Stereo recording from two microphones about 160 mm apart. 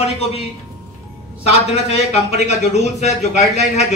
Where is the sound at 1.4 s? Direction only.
40° left (ahead or behind).